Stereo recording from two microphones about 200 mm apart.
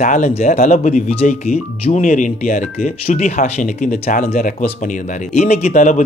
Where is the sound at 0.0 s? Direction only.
40° left (ahead or behind).